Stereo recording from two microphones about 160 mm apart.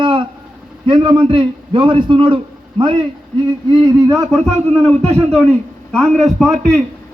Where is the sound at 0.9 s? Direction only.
30° right (ahead or behind).